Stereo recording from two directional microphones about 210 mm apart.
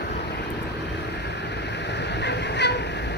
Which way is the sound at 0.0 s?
50° left (ahead or behind).